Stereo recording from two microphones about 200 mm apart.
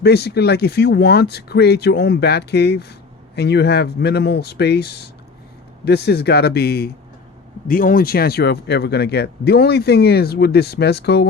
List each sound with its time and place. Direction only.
0.0 s speech: 55° left (ahead or behind)